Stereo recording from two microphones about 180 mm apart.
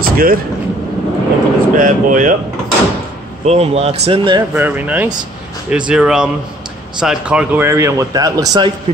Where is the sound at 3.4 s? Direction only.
35° right (ahead or behind).